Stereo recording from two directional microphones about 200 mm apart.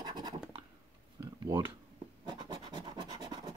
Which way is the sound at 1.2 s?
20° right (ahead or behind).